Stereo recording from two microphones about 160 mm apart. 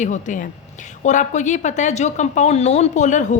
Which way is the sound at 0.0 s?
50° left (ahead or behind).